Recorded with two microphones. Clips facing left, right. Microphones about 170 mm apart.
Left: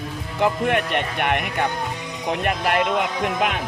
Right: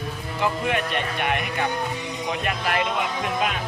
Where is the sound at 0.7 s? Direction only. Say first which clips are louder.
Left 3 dB; 60° left (ahead or behind).